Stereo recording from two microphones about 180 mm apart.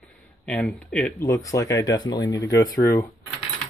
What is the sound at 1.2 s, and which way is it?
Speech, 15° left (ahead or behind).